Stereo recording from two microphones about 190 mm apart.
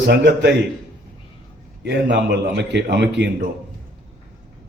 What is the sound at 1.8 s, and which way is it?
A man's voice, 65° right (ahead or behind).